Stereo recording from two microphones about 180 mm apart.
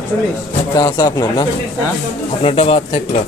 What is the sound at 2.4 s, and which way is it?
Speech, 30° left (ahead or behind).